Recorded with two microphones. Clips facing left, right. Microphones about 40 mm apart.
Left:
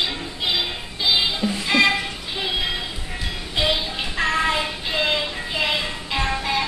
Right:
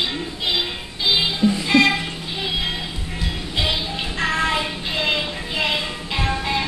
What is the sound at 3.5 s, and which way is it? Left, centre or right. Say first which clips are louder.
Music: left 2 dB; centre.